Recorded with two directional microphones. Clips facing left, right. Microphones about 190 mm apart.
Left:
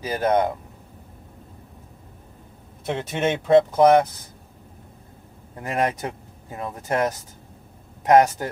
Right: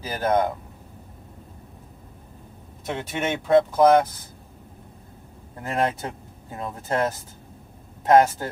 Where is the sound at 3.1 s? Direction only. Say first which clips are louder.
Left 2 dB; 25° left (ahead or behind).